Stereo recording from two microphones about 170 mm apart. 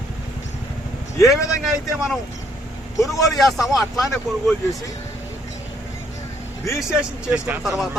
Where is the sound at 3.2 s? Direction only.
Centre (ahead or behind).